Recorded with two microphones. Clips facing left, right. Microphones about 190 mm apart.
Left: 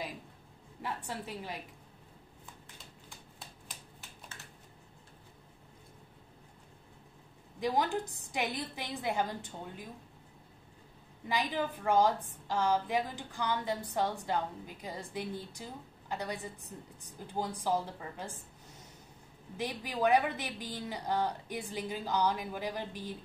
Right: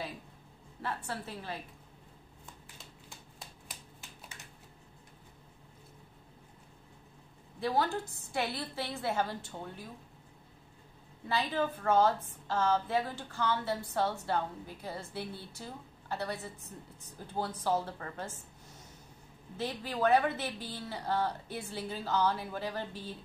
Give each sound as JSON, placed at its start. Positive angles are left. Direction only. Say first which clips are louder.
{"t": 0.8, "sound": "a woman's voice", "louder": "right 1 dB", "side_deg": 15}
{"t": 7.6, "sound": "a woman's voice", "louder": "even", "side_deg": 15}
{"t": 11.2, "sound": "a woman's voice", "louder": "right 1 dB", "side_deg": 15}
{"t": 19.5, "sound": "a woman's voice", "louder": "right 1 dB", "side_deg": 15}